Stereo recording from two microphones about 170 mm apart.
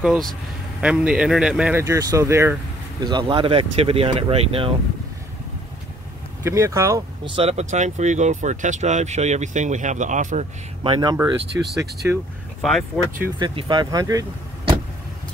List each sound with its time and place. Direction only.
0.0 s speech: centre (ahead or behind)
3.0 s speech: 25° right (ahead or behind)
6.4 s speech: 15° right (ahead or behind)
7.3 s speech: 40° right (ahead or behind)
10.8 s speech: 25° right (ahead or behind)
11.5 s speech: 10° right (ahead or behind)
12.6 s speech: centre (ahead or behind)
13.4 s speech: 25° right (ahead or behind)